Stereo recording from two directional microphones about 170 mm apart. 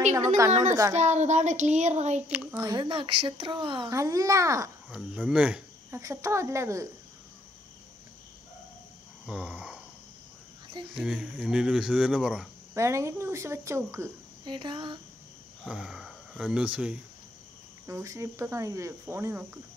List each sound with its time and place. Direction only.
0.5 s a woman's voice: 45° right (ahead or behind)
2.2 s speech: 10° right (ahead or behind)
2.6 s a child's voice: 25° right (ahead or behind)
4.9 s speech: 5° right (ahead or behind)
5.9 s cricket: 20° right (ahead or behind)
9.2 s a sound: 5° right (ahead or behind)
11.0 s speech: 5° right (ahead or behind)
12.7 s cricket: 15° right (ahead or behind)
14.4 s a child's voice: 30° right (ahead or behind)
15.6 s speech: 5° right (ahead or behind)
17.8 s cricket: 20° right (ahead or behind)